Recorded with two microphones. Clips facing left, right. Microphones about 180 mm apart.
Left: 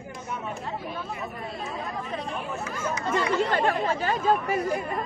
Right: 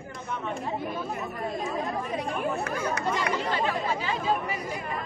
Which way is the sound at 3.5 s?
50° left (ahead or behind).